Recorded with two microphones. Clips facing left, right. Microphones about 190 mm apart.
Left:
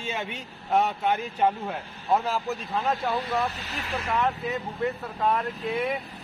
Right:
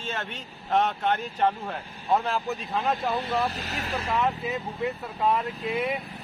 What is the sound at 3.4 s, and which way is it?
Speech, 40° right (ahead or behind).